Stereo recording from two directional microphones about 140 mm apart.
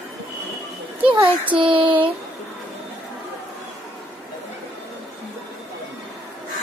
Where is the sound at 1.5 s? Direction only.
40° right (ahead or behind).